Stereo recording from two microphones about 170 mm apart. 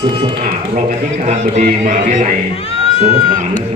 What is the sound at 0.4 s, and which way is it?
A man's voice, 50° right (ahead or behind).